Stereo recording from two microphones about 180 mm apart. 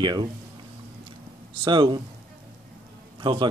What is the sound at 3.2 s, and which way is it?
Speech, 25° right (ahead or behind).